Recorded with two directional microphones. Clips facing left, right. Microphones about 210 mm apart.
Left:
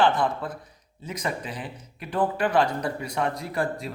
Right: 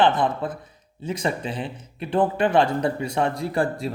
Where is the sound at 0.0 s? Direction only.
20° right (ahead or behind).